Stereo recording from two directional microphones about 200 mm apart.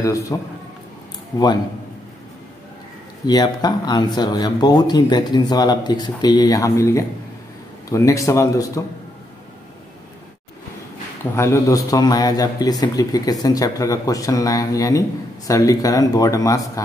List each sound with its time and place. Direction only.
0.0 s a man's voice: 15° left (ahead or behind)
3.3 s a man's voice: 20° left (ahead or behind)
11.3 s a man's voice: 15° left (ahead or behind)